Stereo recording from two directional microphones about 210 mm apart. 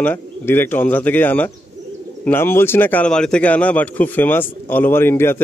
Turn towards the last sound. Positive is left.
turn(degrees=10)  # may be behind; listen again after turning